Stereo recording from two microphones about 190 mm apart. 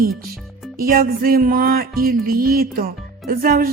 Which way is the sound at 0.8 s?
50° right (ahead or behind).